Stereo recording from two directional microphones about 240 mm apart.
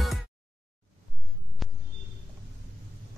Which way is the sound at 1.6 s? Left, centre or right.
Centre.